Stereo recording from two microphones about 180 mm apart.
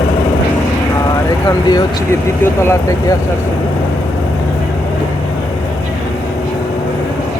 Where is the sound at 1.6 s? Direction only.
20° left (ahead or behind).